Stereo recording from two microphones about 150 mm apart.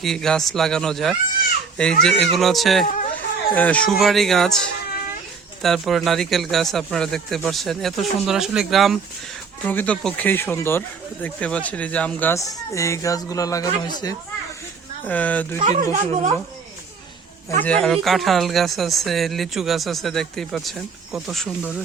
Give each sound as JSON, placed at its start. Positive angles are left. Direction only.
{"t": 0.0, "sound": "speech", "side_deg": 5}
{"t": 2.8, "sound": "speech", "side_deg": 60}
{"t": 3.5, "sound": "speech", "side_deg": 10}
{"t": 5.6, "sound": "speech", "side_deg": 0}
{"t": 12.3, "sound": "speech", "side_deg": 20}
{"t": 15.0, "sound": "speech", "side_deg": 10}
{"t": 15.6, "sound": "speech", "side_deg": -45}
{"t": 17.6, "sound": "speech", "side_deg": 5}